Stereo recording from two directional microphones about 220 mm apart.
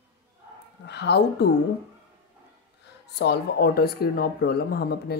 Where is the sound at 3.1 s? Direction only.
50° left (ahead or behind).